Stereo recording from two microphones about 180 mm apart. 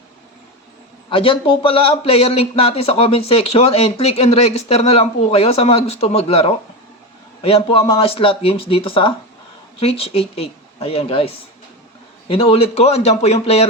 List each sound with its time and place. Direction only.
1.1 s a man's voice: 30° left (ahead or behind)